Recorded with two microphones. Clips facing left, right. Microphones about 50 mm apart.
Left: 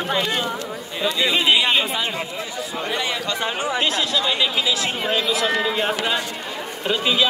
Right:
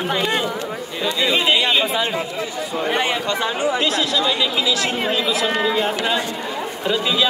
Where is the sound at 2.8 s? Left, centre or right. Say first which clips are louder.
Right 5 dB; right.